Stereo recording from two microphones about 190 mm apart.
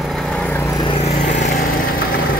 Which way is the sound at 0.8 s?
30° left (ahead or behind).